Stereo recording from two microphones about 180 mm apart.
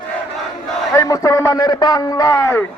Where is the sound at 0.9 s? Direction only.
20° left (ahead or behind).